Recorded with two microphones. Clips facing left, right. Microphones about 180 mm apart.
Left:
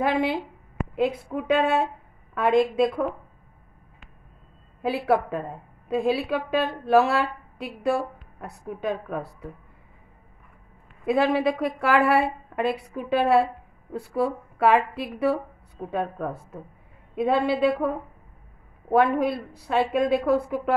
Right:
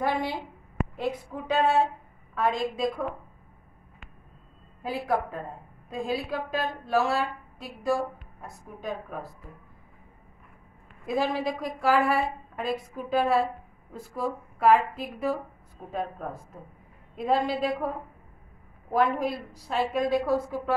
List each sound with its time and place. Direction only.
1.3 s a woman's voice: 60° left (ahead or behind)
4.8 s a woman's voice: 70° left (ahead or behind)
11.1 s a woman's voice: 65° left (ahead or behind)